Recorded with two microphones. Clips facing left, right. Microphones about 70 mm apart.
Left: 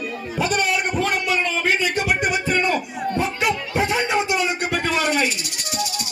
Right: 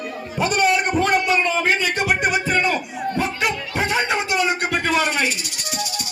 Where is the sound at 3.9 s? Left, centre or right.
Right.